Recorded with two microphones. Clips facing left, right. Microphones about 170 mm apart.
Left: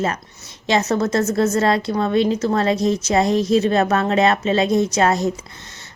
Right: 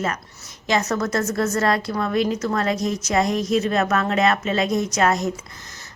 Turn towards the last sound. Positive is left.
turn(degrees=30)  # may be behind; listen again after turning